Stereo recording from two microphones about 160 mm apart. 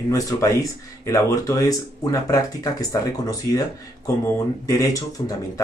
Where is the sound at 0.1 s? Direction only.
20° left (ahead or behind).